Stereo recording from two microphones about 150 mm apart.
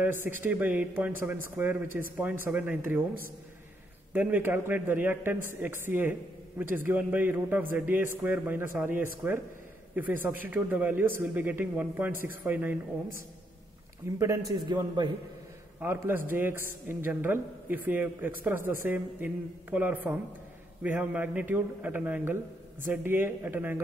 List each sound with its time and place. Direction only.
0.0 s a man's voice: 15° right (ahead or behind)
14.1 s a man's voice: 20° right (ahead or behind)
15.8 s a man's voice: 15° right (ahead or behind)